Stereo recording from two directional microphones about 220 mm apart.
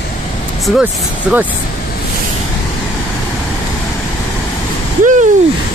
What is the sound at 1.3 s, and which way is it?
Speech, centre (ahead or behind).